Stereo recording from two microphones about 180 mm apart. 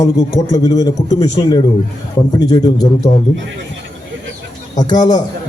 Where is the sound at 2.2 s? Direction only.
20° left (ahead or behind).